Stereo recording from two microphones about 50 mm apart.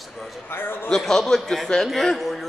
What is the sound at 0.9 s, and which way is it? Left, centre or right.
A man's voice, centre.